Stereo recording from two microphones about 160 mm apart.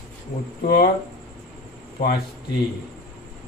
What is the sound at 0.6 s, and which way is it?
Speech, 65° left (ahead or behind).